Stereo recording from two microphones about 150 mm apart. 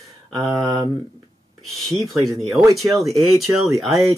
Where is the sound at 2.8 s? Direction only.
Centre (ahead or behind).